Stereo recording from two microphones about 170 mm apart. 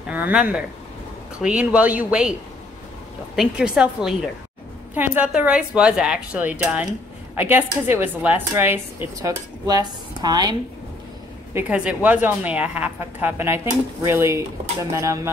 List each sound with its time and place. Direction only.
0.1 s a woman's voice: 10° right (ahead or behind)
3.3 s a woman's voice: 5° right (ahead or behind); by 10.5 s 25° right (ahead or behind)
11.5 s a woman's voice: 5° right (ahead or behind)